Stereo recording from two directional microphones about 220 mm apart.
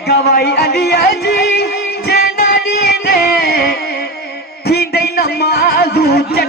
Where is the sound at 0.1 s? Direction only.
45° left (ahead or behind).